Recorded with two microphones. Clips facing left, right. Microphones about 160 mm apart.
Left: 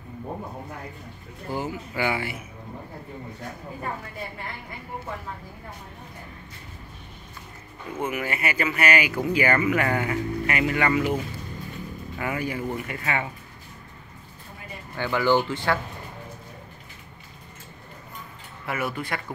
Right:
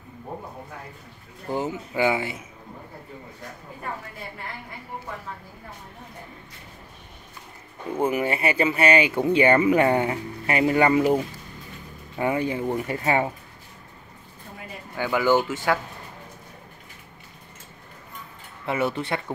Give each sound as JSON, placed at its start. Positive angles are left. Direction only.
{"t": 1.5, "sound": "speech", "side_deg": -20}
{"t": 7.9, "sound": "speech", "side_deg": -30}
{"t": 12.2, "sound": "speech", "side_deg": -25}
{"t": 15.0, "sound": "speech", "side_deg": -10}
{"t": 18.7, "sound": "speech", "side_deg": -25}